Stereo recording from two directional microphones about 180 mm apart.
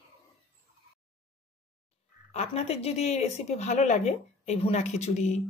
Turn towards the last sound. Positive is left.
turn(degrees=40)  # may be behind; listen again after turning